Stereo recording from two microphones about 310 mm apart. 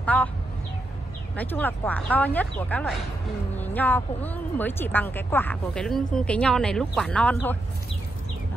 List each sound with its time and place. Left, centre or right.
0.0 s speech: centre
1.3 s speech: centre